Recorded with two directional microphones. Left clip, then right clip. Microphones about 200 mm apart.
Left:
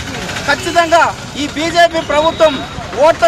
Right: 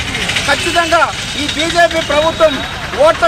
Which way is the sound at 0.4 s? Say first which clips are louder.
Left 3 dB; 25° left (ahead or behind).